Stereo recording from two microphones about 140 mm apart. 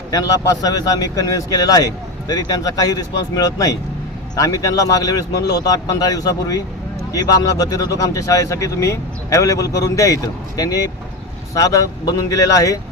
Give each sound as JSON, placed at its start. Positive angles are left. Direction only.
{"t": 0.6, "sound": "speech", "side_deg": 25}